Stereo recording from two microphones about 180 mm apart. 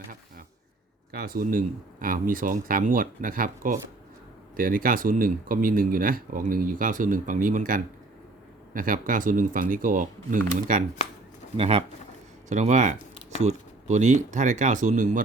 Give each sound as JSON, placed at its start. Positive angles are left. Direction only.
{"t": 1.1, "sound": "speech", "side_deg": -55}
{"t": 11.5, "sound": "speech", "side_deg": -35}